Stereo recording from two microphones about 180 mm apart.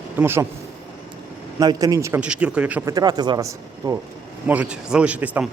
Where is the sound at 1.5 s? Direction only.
20° right (ahead or behind).